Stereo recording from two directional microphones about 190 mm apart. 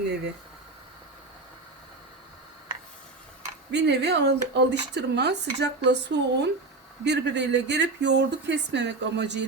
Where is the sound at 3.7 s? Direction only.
65° right (ahead or behind).